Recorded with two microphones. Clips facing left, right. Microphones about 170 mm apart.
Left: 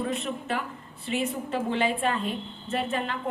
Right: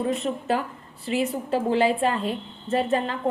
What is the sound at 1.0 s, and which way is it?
Speech, 35° right (ahead or behind).